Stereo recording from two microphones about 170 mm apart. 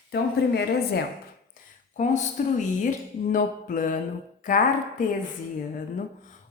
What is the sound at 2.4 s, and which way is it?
Music, 45° left (ahead or behind).